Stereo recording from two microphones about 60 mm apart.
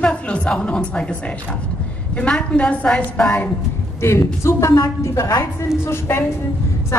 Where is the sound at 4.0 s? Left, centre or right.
Left.